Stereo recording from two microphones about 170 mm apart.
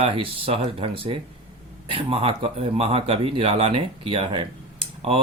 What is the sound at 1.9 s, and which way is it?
Speech, 35° right (ahead or behind).